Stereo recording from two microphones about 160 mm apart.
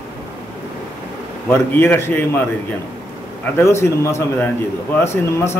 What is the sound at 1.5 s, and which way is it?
Speech, 15° left (ahead or behind).